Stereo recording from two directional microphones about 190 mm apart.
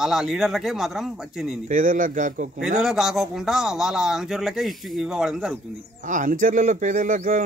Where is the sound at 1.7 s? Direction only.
45° right (ahead or behind).